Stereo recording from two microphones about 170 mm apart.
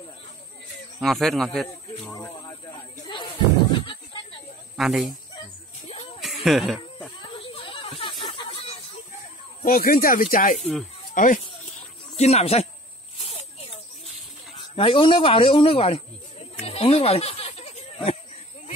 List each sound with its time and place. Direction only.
1.0 s speech: centre (ahead or behind)
3.1 s music: 30° left (ahead or behind)
4.7 s speech: centre (ahead or behind)
6.2 s insect: centre (ahead or behind)
7.2 s snake: 30° left (ahead or behind)
9.7 s speech: 60° left (ahead or behind)
10.6 s speech: centre (ahead or behind)
11.1 s speech: 50° left (ahead or behind)
13.2 s snake: 35° left (ahead or behind)
14.8 s snake: 30° left (ahead or behind)